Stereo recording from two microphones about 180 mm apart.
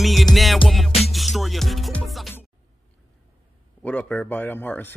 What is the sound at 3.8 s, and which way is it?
Speech, 5° left (ahead or behind).